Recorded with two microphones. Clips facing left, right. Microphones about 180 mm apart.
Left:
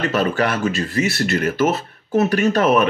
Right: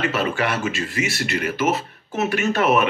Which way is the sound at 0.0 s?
40° left (ahead or behind).